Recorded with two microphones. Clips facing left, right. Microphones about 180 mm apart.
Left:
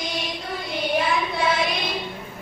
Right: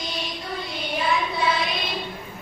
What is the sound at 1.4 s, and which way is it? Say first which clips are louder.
Child singing: left 1 dB; 50° left (ahead or behind).